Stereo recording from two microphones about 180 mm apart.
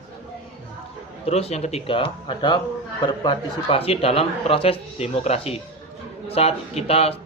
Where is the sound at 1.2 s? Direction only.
35° left (ahead or behind).